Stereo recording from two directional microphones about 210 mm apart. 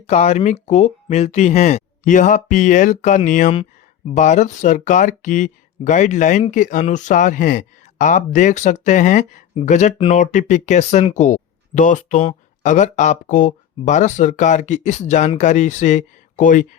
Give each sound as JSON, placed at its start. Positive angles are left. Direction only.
{"t": 0.1, "sound": "speech", "side_deg": 30}